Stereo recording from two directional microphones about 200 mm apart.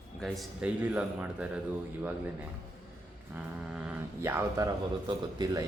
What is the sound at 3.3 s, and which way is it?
A man's voice, 5° right (ahead or behind).